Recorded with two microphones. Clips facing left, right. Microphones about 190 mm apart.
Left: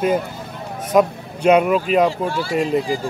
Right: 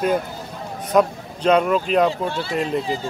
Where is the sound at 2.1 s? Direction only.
20° right (ahead or behind).